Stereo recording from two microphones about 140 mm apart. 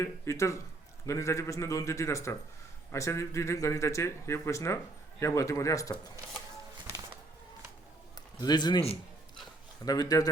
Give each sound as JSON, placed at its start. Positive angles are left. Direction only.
{"t": 0.0, "sound": "speech", "side_deg": 20}
{"t": 8.4, "sound": "speech", "side_deg": 30}
{"t": 9.8, "sound": "speech", "side_deg": 25}